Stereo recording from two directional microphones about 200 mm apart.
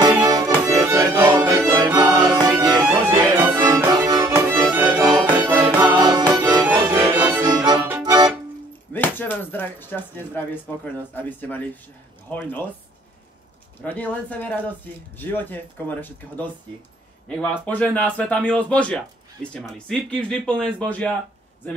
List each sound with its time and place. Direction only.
0.0 s accordion: 20° right (ahead or behind)
0.7 s music: 15° right (ahead or behind)
2.8 s music: 5° right (ahead or behind)
3.3 s music: 20° right (ahead or behind)
6.8 s music: 20° right (ahead or behind)
7.4 s music: 20° right (ahead or behind)
8.9 s speech: 10° left (ahead or behind)
13.8 s speech: 10° left (ahead or behind)